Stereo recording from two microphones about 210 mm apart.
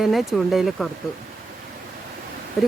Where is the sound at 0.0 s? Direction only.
Centre (ahead or behind).